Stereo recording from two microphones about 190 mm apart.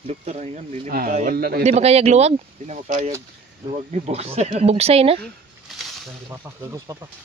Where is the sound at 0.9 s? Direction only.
50° right (ahead or behind).